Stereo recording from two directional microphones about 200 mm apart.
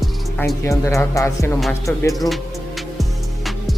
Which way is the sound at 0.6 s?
15° left (ahead or behind).